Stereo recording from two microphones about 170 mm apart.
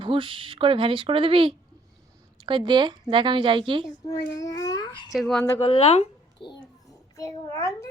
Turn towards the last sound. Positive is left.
turn(degrees=20)  # may be behind; listen again after turning